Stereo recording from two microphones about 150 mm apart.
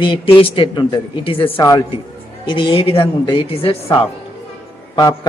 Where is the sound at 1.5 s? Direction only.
25° left (ahead or behind).